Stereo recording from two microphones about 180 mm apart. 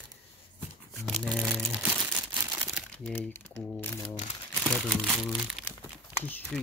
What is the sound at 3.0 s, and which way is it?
Speech, 10° left (ahead or behind).